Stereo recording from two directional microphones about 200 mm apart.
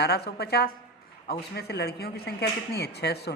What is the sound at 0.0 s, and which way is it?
A woman's voice, 55° left (ahead or behind).